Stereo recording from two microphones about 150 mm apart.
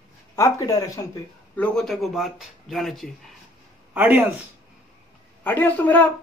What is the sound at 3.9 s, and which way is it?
Speech, 10° right (ahead or behind).